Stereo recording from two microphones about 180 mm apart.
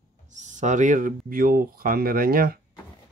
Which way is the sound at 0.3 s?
40° right (ahead or behind).